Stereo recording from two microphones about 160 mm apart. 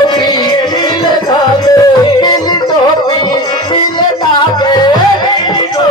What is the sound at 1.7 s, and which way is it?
Yodeling, 25° left (ahead or behind).